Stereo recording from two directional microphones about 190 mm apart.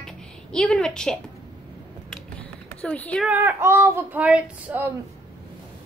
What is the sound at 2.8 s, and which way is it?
Speech, 5° left (ahead or behind).